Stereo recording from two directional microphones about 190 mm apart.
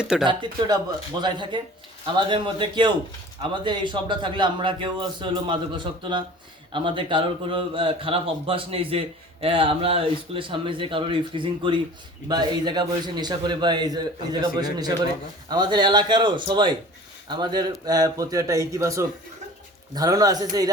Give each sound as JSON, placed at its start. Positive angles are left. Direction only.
{"t": 0.0, "sound": "speech", "side_deg": -5}
{"t": 1.2, "sound": "a man's voice", "side_deg": -25}